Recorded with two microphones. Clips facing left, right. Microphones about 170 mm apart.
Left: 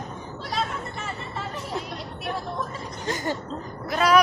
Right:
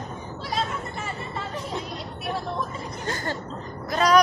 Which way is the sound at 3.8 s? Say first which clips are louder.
Even; 5° left (ahead or behind).